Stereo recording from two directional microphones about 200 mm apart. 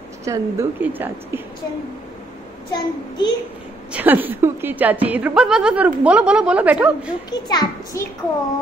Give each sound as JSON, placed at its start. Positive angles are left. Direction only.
{"t": 0.2, "sound": "a woman's voice", "side_deg": -15}
{"t": 2.7, "sound": "a child's voice", "side_deg": 20}
{"t": 3.9, "sound": "a woman's voice", "side_deg": -10}
{"t": 7.2, "sound": "a child's voice", "side_deg": 20}